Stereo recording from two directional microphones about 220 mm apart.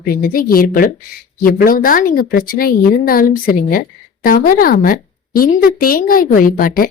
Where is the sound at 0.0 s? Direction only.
40° left (ahead or behind).